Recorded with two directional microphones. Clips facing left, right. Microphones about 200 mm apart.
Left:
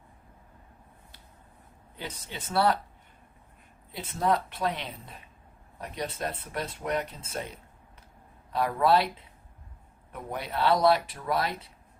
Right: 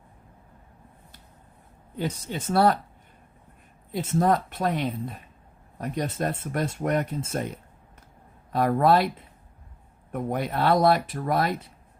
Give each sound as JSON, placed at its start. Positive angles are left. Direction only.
{"t": 2.0, "sound": "speech", "side_deg": -45}
{"t": 3.9, "sound": "speech", "side_deg": -45}
{"t": 8.5, "sound": "speech", "side_deg": -50}